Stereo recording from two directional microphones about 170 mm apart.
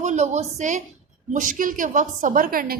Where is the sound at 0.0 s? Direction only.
45° right (ahead or behind).